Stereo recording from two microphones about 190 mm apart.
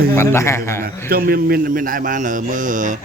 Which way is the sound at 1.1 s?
50° right (ahead or behind).